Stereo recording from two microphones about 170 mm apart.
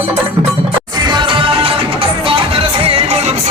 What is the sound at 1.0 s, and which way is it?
Music, 25° right (ahead or behind).